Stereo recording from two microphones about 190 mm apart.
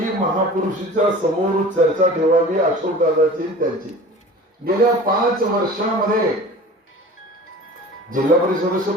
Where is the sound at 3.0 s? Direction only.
40° right (ahead or behind).